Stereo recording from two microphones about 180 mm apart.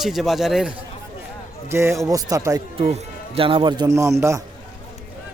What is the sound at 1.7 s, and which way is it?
Speech, 15° right (ahead or behind).